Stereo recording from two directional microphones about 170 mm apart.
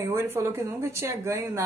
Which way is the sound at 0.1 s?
15° right (ahead or behind).